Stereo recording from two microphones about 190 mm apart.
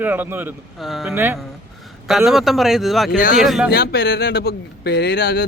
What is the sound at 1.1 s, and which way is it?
Speech, 10° right (ahead or behind).